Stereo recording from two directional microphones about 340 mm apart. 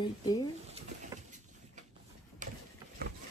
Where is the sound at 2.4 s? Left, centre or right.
Right.